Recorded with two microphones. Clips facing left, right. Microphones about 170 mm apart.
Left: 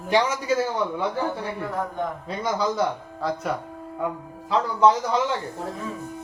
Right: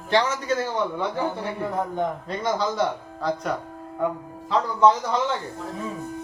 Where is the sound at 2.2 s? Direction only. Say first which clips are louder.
Even; 5° left (ahead or behind).